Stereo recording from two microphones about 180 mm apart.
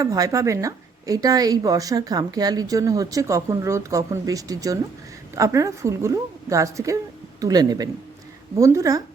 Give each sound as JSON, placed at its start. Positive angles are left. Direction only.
{"t": 0.0, "sound": "a woman's voice", "side_deg": -20}